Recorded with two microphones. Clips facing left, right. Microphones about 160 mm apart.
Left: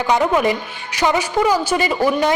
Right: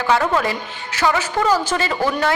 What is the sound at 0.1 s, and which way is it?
A woman's voice, 15° left (ahead or behind).